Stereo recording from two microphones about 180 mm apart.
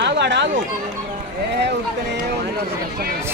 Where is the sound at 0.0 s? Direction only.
70° right (ahead or behind).